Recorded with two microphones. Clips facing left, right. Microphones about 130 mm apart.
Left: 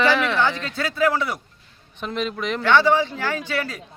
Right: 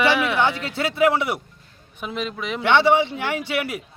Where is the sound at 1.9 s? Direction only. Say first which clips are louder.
Left 2 dB; 5° right (ahead or behind).